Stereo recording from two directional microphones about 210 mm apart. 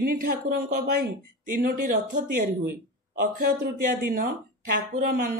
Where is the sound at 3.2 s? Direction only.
50° right (ahead or behind).